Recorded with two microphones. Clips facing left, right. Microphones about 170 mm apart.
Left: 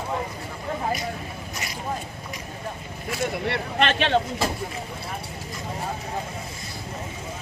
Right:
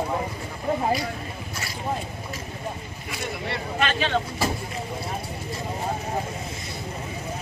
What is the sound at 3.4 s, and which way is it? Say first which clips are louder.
Speech: left 1 dB; 65° left (ahead or behind).